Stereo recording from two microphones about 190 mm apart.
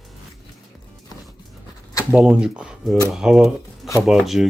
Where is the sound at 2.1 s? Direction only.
5° right (ahead or behind).